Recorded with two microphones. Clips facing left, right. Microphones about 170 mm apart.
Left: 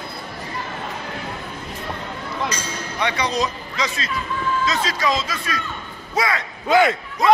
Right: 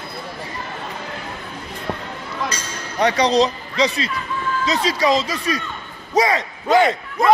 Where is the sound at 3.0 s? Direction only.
40° right (ahead or behind).